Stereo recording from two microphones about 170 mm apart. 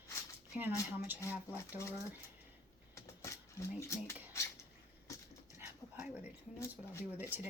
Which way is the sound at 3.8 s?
15° left (ahead or behind).